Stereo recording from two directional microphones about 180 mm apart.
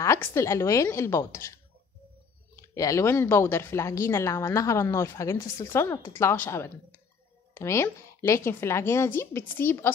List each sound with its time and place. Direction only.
0.0 s speech: 15° left (ahead or behind)